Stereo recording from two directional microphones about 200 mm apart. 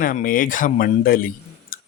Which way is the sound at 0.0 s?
45° left (ahead or behind).